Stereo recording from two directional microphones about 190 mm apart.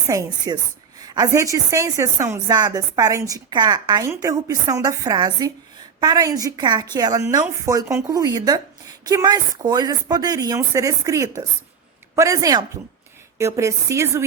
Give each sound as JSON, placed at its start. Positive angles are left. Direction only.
{"t": 0.1, "sound": "a woman's voice", "side_deg": -20}